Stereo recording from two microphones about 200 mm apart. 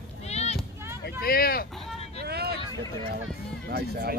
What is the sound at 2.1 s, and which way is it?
Vehicle, 55° right (ahead or behind).